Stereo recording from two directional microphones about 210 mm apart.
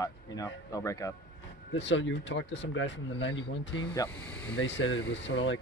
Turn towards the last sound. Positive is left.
turn(degrees=65)  # may be behind; listen again after turning